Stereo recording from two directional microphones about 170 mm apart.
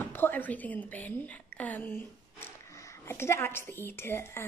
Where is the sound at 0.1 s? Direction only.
10° left (ahead or behind).